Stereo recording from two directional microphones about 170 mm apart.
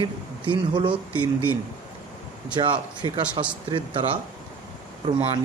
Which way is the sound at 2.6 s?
30° right (ahead or behind).